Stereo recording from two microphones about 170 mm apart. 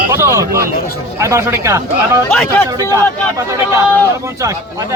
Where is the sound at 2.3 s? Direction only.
5° left (ahead or behind).